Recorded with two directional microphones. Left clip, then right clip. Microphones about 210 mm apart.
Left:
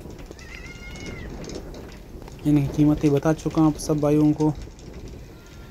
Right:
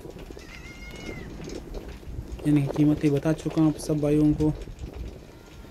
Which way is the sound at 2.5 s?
5° left (ahead or behind).